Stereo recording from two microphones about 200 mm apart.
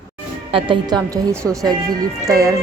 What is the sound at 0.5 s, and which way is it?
Speech, 25° right (ahead or behind).